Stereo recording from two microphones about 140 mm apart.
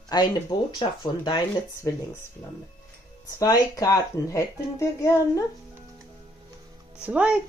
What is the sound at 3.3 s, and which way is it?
Speech, 25° left (ahead or behind).